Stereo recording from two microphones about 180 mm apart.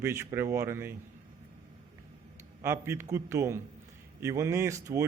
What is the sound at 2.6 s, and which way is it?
A man's voice, 15° right (ahead or behind).